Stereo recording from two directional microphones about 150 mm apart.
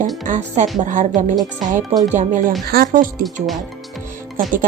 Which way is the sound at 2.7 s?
80° right.